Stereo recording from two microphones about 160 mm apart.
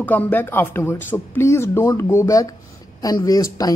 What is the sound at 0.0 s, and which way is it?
A man's voice, 10° left (ahead or behind).